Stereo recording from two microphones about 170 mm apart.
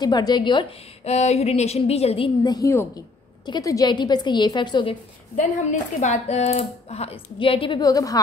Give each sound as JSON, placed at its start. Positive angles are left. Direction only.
{"t": 0.0, "sound": "a woman's voice", "side_deg": 25}
{"t": 1.0, "sound": "a woman's voice", "side_deg": 40}
{"t": 5.3, "sound": "speech", "side_deg": 45}